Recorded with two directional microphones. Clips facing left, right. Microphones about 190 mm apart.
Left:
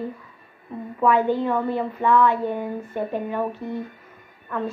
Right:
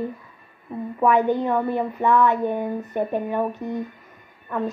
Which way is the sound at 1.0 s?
15° right (ahead or behind).